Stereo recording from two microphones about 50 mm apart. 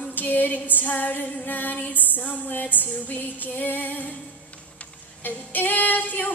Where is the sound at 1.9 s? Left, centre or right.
Left.